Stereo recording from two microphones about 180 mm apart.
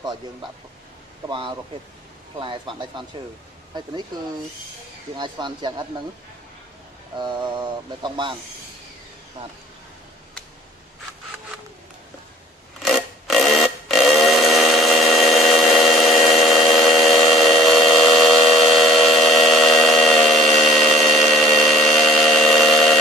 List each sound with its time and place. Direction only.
1.3 s speech: 25° right (ahead or behind)
5.1 s speech: 25° right (ahead or behind)
7.2 s speech: 25° right (ahead or behind)
12.8 s a sound: centre (ahead or behind)